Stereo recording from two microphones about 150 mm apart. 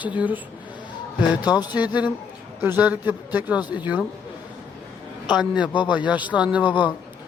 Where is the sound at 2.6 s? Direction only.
10° right (ahead or behind).